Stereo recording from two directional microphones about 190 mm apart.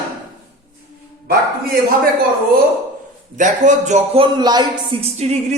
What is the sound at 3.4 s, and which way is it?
Speech, 40° right (ahead or behind).